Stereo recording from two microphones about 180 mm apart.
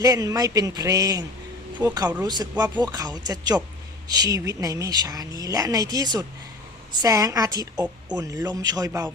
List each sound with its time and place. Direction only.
0.0 s a woman's voice: 20° right (ahead or behind)